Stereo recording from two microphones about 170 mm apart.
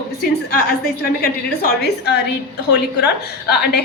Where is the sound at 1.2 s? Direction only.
70° left (ahead or behind).